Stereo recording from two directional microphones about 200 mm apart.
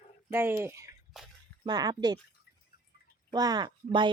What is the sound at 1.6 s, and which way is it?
Speech, 20° right (ahead or behind).